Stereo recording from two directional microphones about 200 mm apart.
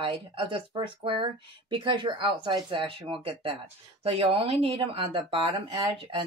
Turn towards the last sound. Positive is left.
turn(degrees=-25)  # may be behind; listen again after turning